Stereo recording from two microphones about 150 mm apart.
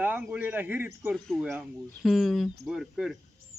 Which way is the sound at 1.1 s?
5° left (ahead or behind).